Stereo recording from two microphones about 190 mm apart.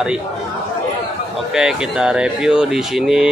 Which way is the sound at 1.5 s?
5° right (ahead or behind).